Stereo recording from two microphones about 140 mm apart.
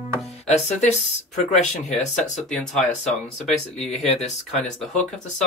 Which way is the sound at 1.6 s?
55° left (ahead or behind).